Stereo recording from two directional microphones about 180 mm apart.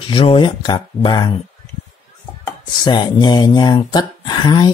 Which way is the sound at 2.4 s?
25° left (ahead or behind).